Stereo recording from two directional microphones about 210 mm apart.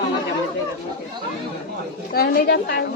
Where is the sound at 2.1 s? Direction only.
50° left (ahead or behind).